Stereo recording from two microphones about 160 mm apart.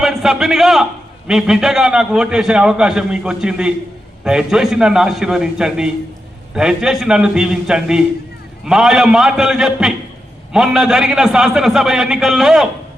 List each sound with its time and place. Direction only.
0.0 s a man's voice: centre (ahead or behind)